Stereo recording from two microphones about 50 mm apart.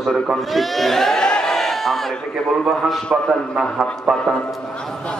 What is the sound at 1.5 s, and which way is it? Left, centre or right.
Crowd, centre.